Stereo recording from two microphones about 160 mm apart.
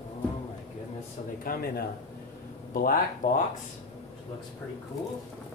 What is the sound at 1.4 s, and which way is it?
Speech, 70° left (ahead or behind).